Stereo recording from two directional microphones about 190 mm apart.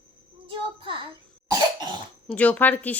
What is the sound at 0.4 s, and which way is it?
Child singing, 25° right (ahead or behind).